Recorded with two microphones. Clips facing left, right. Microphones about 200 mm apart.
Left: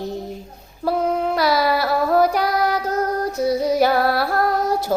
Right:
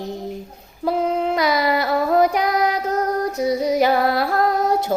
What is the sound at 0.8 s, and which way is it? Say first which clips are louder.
Child singing: even; 20° right (ahead or behind).